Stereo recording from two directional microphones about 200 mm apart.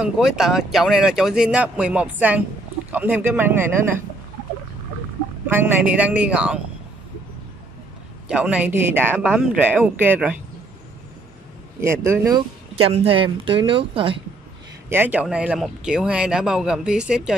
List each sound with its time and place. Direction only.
0.0 s speech: centre (ahead or behind)
5.5 s speech: 5° right (ahead or behind)
8.3 s speech: 5° right (ahead or behind)
11.8 s speech: 15° right (ahead or behind)
12.8 s speech: 30° right (ahead or behind)
14.9 s speech: 10° right (ahead or behind)